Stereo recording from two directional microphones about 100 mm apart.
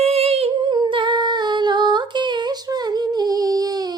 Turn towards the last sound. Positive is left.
turn(degrees=-40)  # may be behind; listen again after turning